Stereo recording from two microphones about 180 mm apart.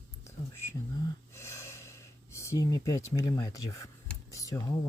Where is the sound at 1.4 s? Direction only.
15° left (ahead or behind).